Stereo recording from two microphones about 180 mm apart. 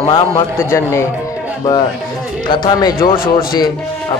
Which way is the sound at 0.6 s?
15° left (ahead or behind).